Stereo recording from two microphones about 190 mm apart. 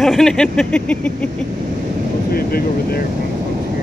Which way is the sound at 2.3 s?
55° left (ahead or behind).